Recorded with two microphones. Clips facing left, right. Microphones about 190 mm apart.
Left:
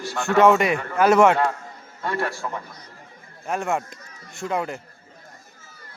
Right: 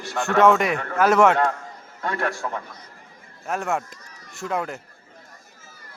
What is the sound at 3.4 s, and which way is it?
A man's voice, 5° right (ahead or behind).